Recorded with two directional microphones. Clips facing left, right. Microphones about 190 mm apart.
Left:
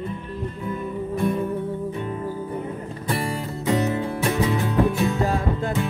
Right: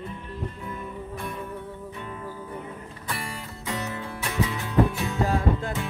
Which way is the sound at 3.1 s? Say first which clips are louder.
Left 9 dB; 30° left (ahead or behind).